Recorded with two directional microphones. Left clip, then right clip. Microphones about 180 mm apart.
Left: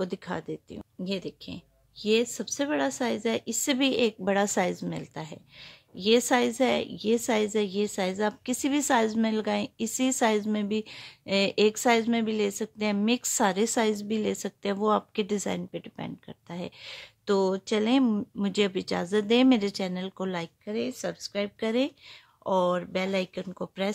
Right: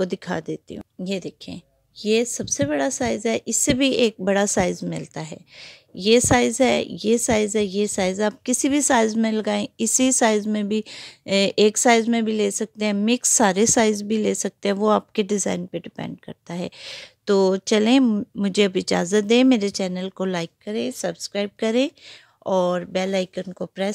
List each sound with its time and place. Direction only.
0.0 s a woman's voice: 35° right (ahead or behind)
18.0 s a woman's voice: 30° right (ahead or behind)